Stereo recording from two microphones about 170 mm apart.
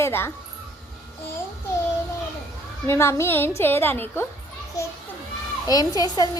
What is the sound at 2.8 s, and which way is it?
A woman's voice, 15° left (ahead or behind).